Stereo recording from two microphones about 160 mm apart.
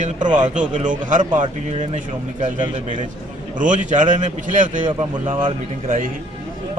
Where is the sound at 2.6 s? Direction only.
30° right (ahead or behind).